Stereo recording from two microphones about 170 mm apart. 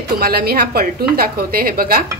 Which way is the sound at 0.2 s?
65° right (ahead or behind).